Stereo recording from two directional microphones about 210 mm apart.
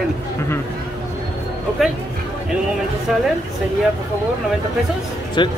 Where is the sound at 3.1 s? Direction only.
Centre (ahead or behind).